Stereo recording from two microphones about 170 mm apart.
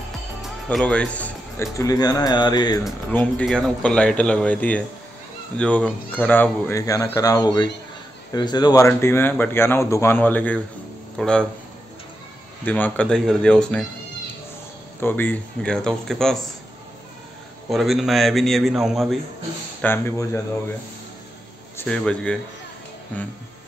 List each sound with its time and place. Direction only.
0.4 s speech: 5° left (ahead or behind); by 2.8 s 25° left (ahead or behind)
3.1 s a man's voice: 10° left (ahead or behind)
12.6 s a man's voice: 10° left (ahead or behind)
15.0 s a man's voice: 10° left (ahead or behind)
17.6 s a man's voice: centre (ahead or behind)
19.8 s speech: 15° left (ahead or behind)
21.7 s a man's voice: 5° left (ahead or behind)